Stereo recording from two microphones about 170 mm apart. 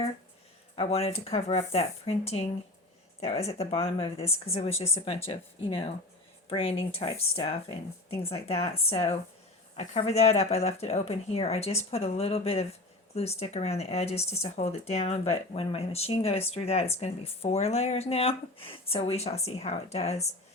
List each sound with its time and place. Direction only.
0.8 s speech: 35° left (ahead or behind)